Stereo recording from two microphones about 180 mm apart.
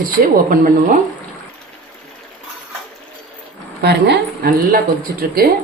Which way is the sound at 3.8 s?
70° right (ahead or behind).